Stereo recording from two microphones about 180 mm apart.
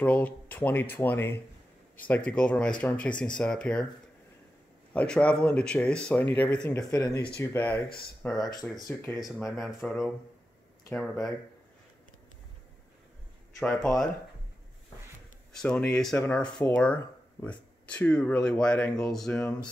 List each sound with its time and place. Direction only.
0.0 s speech: 10° left (ahead or behind)
4.9 s speech: 5° left (ahead or behind)
6.9 s speech: 20° left (ahead or behind)
8.4 s speech: 20° left (ahead or behind)
9.1 s speech: centre (ahead or behind)
15.5 s speech: 5° left (ahead or behind)